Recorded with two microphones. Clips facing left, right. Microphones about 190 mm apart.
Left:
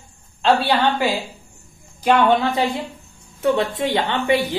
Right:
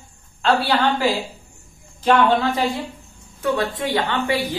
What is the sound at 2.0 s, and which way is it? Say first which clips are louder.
A woman's voice: left 1 dB; 20° left (ahead or behind).